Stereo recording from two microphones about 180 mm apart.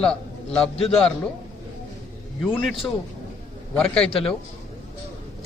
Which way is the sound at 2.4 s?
Centre (ahead or behind).